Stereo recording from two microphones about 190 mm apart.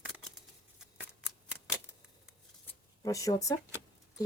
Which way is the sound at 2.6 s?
15° left (ahead or behind).